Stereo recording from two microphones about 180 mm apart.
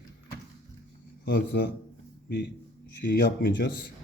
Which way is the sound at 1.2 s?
65° left (ahead or behind).